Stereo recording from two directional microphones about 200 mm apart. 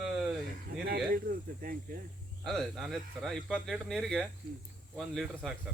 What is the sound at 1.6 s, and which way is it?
Speech, 45° right (ahead or behind).